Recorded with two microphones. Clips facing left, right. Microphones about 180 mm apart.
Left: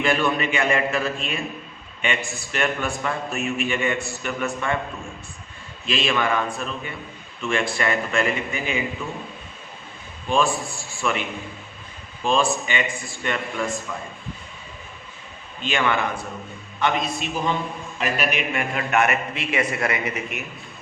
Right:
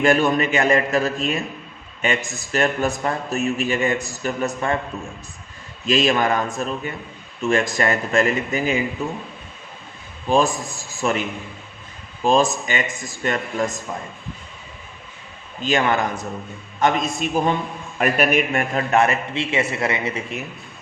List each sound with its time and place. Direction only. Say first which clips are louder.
0.0 s a man's voice: right 4 dB; 45° right (ahead or behind)
5.8 s a man's voice: right 5 dB; 40° right (ahead or behind)
10.2 s a man's voice: right 3 dB; 40° right (ahead or behind)
15.6 s a man's voice: right 3 dB; 40° right (ahead or behind)